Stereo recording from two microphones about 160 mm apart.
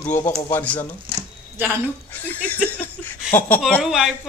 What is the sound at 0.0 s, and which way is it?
Speech, 15° left (ahead or behind).